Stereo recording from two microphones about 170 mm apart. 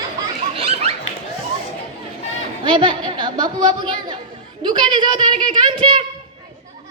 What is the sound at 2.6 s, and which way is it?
A woman's voice, 30° right (ahead or behind).